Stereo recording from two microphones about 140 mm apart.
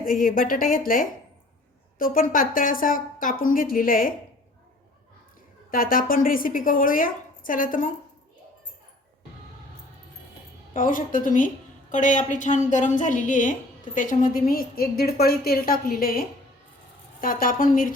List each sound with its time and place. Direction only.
0.0 s a woman's voice: 80° left
5.7 s a woman's voice: 90° left
10.8 s a woman's voice: 75° left (ahead or behind)